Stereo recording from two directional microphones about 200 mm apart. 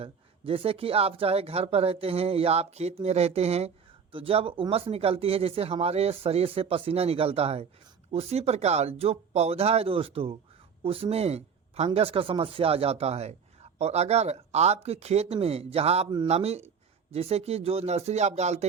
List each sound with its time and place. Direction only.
0.0 s speech: 30° right (ahead or behind)